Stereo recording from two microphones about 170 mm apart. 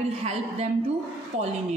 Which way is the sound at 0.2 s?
40° right (ahead or behind).